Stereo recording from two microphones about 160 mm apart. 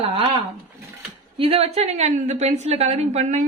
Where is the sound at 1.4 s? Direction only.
40° right (ahead or behind).